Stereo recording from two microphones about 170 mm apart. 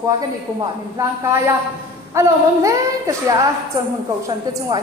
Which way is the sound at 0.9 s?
15° right (ahead or behind).